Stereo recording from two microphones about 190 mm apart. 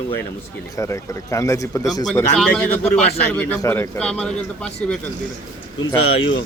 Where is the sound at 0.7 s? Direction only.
15° left (ahead or behind).